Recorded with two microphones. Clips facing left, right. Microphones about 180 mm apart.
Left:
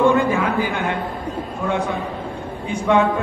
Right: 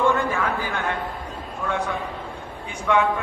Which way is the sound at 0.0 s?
15° left (ahead or behind).